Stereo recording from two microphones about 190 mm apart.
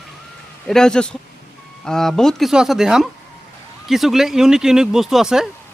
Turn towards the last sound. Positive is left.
turn(degrees=-5)  # may be behind; listen again after turning